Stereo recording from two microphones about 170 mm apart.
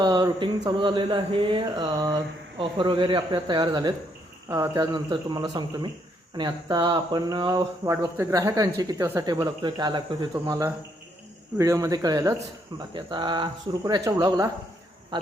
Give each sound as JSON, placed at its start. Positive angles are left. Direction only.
{"t": 0.0, "sound": "speech", "side_deg": -25}